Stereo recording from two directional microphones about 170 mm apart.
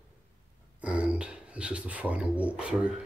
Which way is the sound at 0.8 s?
5° right (ahead or behind).